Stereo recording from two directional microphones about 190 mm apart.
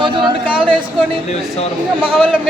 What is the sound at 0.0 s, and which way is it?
Speech, 25° right (ahead or behind).